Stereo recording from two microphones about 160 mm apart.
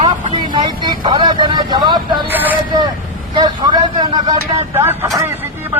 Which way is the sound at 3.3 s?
25° right (ahead or behind).